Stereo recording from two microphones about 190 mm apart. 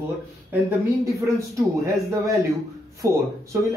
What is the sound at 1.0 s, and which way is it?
Speech, 15° right (ahead or behind).